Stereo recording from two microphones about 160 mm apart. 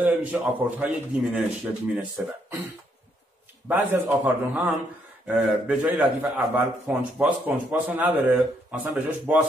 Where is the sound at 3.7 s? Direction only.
10° right (ahead or behind).